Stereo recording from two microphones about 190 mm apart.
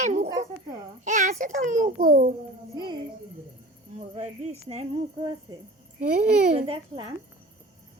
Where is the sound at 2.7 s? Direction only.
25° right (ahead or behind).